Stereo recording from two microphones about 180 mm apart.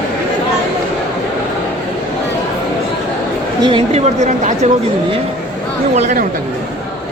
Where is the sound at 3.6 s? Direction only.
35° right (ahead or behind).